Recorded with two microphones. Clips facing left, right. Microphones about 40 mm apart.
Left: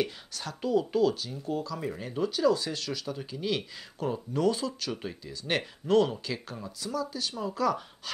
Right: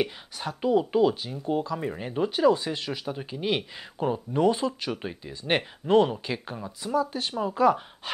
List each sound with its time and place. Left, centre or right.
0.0 s speech: right